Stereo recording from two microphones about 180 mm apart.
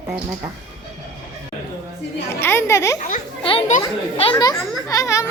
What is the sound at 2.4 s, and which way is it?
Children playing, 15° left (ahead or behind).